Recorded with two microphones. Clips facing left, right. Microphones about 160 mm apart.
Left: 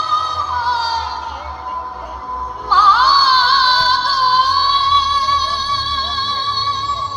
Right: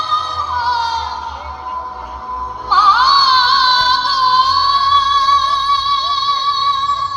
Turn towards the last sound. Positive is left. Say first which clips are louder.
# right 4 dB
turn(degrees=30)  # may be behind; listen again after turning